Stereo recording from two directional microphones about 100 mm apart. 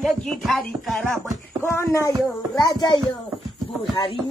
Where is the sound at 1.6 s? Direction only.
25° left (ahead or behind).